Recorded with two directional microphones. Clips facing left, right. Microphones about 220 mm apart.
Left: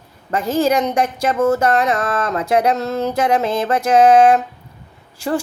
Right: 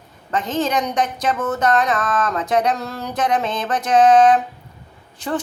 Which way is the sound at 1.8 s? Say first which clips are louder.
Left 2 dB; 25° left (ahead or behind).